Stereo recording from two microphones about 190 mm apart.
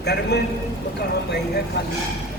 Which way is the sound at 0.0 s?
60° left (ahead or behind).